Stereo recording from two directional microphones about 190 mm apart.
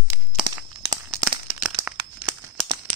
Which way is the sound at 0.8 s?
25° right (ahead or behind).